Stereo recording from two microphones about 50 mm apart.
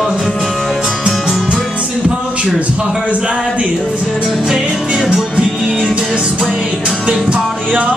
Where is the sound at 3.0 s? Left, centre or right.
Right.